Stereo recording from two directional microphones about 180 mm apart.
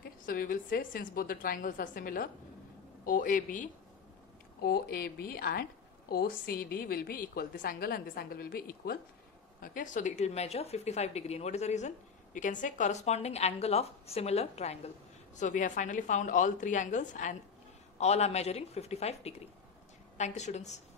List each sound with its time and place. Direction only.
0.0 s a woman's voice: 50° left (ahead or behind)
4.6 s a woman's voice: 60° left (ahead or behind)
9.6 s a woman's voice: 45° left (ahead or behind)